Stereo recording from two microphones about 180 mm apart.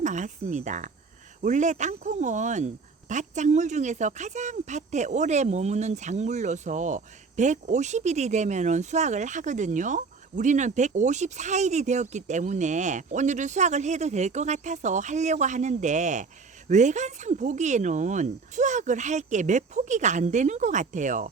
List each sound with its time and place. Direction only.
0.0 s speech: 45° right (ahead or behind)